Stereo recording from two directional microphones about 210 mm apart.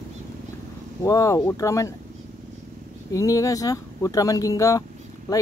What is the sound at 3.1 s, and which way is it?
Speech, 15° left (ahead or behind).